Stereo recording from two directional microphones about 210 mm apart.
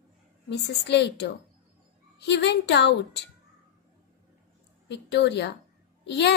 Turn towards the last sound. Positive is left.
turn(degrees=55)  # may be behind; listen again after turning